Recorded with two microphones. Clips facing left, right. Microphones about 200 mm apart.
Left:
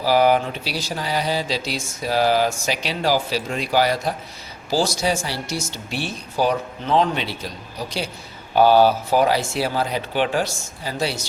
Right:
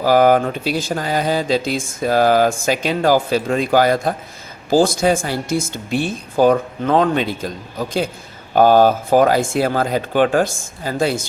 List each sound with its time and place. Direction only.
0.0 s speech: 50° right (ahead or behind)